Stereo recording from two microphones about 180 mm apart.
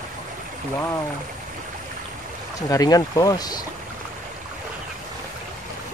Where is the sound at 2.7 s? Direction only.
20° left (ahead or behind).